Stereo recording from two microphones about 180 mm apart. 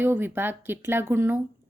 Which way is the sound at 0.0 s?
10° right (ahead or behind).